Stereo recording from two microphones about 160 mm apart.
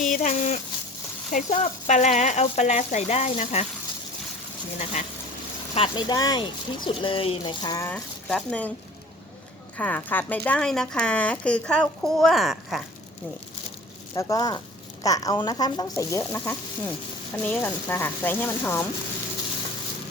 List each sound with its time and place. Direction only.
0.0 s a sound: 50° left (ahead or behind)
1.3 s speech: 50° left (ahead or behind)
4.8 s speech: 45° left (ahead or behind)
5.7 s speech: 30° left (ahead or behind)
7.9 s speech: 5° left (ahead or behind)
9.7 s speech: 10° left (ahead or behind)
14.2 s speech: 20° left (ahead or behind)